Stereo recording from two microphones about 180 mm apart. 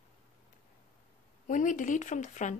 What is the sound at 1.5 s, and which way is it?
Speech, 45° left (ahead or behind).